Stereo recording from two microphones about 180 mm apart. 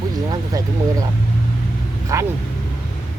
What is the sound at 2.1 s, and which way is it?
Speech, 20° right (ahead or behind).